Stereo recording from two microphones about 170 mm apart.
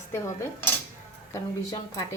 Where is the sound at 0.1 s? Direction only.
15° left (ahead or behind).